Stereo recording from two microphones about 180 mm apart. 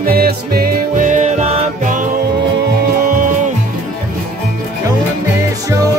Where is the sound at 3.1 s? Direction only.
45° right (ahead or behind).